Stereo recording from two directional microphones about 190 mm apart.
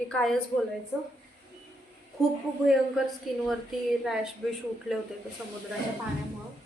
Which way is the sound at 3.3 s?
Centre (ahead or behind).